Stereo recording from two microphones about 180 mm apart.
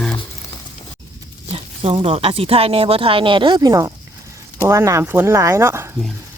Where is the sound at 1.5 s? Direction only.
35° right (ahead or behind).